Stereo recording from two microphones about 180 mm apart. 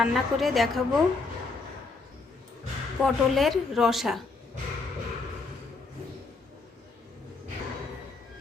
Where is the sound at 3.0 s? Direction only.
Centre (ahead or behind).